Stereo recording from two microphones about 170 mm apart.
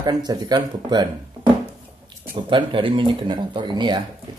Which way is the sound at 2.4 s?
30° right (ahead or behind).